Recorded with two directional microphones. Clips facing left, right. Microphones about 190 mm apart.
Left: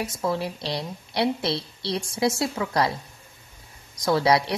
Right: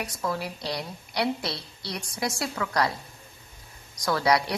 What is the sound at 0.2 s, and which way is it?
A woman's voice, 25° left (ahead or behind).